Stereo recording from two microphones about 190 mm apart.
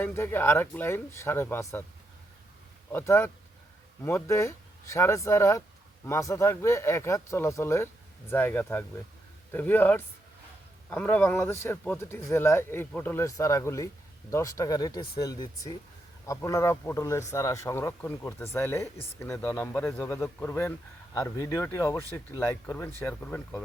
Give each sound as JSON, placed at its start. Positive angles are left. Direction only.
{"t": 0.0, "sound": "speech", "side_deg": 10}
{"t": 2.9, "sound": "speech", "side_deg": 10}